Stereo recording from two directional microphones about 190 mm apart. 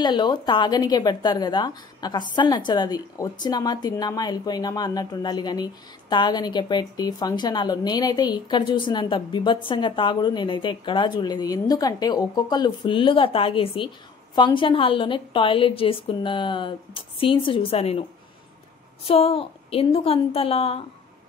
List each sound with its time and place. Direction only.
0.0 s a woman's voice: 25° left (ahead or behind)
19.0 s a woman's voice: 30° left (ahead or behind)